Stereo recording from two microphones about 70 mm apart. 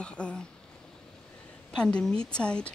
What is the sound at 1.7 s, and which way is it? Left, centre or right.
A woman's voice, centre.